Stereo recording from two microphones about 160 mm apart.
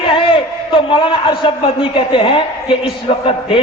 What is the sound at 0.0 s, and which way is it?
A man's voice, 35° left (ahead or behind).